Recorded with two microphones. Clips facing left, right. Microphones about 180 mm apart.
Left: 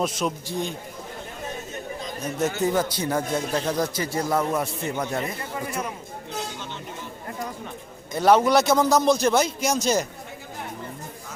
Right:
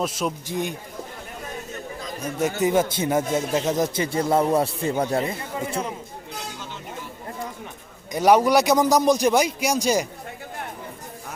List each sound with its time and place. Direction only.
0.0 s a man's voice: 5° right (ahead or behind)
0.4 s a man's voice: 20° right (ahead or behind)
2.4 s a man's voice: 20° right (ahead or behind)
8.1 s a man's voice: 15° right (ahead or behind)